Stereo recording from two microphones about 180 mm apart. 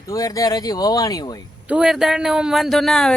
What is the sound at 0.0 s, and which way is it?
Speech, 20° left (ahead or behind).